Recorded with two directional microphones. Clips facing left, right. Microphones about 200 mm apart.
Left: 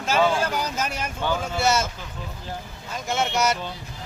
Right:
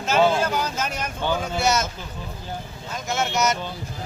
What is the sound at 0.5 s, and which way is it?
Speech, 15° left (ahead or behind).